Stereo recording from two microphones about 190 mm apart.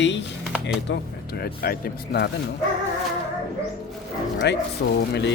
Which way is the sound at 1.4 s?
55° left (ahead or behind).